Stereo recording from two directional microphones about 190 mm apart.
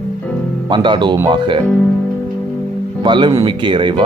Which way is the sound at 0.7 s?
25° right (ahead or behind).